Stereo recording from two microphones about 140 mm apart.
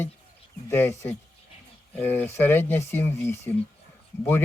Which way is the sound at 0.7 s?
15° left (ahead or behind).